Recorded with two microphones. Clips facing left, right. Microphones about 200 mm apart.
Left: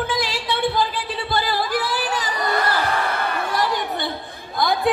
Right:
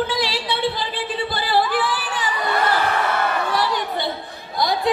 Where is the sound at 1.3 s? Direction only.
45° left (ahead or behind).